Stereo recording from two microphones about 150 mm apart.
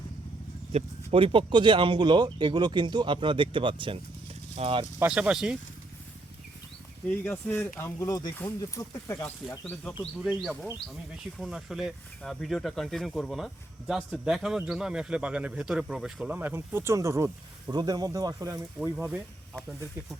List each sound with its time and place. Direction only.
0.7 s speech: 40° right (ahead or behind)
4.9 s speech: 10° right (ahead or behind)
7.1 s speech: 15° left (ahead or behind)
10.4 s speech: centre (ahead or behind); by 18.6 s 20° right (ahead or behind)